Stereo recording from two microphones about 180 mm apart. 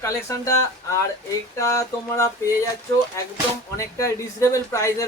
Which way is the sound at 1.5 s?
15° left (ahead or behind).